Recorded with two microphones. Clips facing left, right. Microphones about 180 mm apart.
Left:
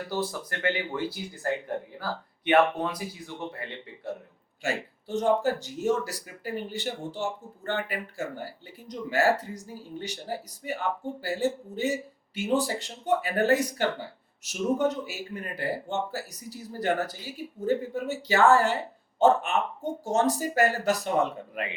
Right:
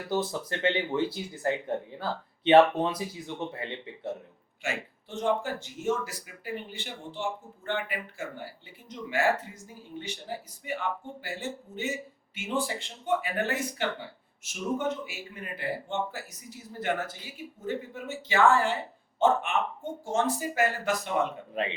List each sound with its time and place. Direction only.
0.1 s speech: 20° right (ahead or behind)
4.6 s speech: 40° left (ahead or behind)